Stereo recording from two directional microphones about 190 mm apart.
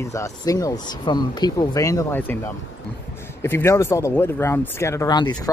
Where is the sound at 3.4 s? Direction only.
15° left (ahead or behind).